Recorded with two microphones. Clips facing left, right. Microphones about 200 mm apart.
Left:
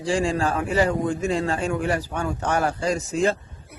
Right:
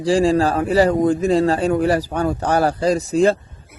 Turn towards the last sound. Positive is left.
turn(degrees=-35)  # may be behind; listen again after turning